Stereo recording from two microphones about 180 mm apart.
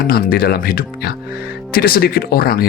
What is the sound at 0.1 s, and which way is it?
Speech, 55° left (ahead or behind).